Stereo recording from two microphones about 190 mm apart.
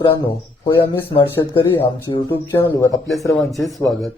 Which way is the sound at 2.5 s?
15° left (ahead or behind).